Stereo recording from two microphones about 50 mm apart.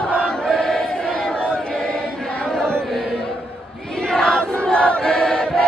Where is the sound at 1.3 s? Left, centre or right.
Centre.